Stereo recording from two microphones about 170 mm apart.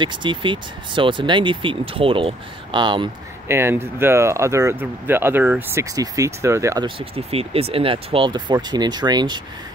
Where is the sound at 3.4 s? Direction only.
15° right (ahead or behind).